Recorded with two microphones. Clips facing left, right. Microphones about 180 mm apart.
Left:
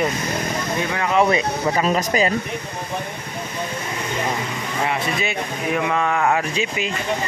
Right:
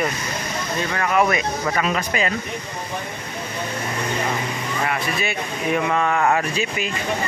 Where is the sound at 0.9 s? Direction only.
15° left (ahead or behind).